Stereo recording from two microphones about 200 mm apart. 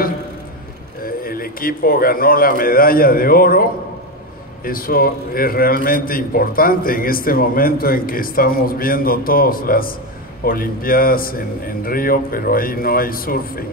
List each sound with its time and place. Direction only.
1.0 s a man's voice: 45° left (ahead or behind)
4.6 s a man's voice: 45° left (ahead or behind)